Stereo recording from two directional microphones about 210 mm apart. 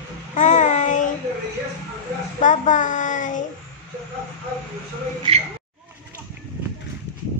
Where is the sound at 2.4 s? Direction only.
35° left (ahead or behind).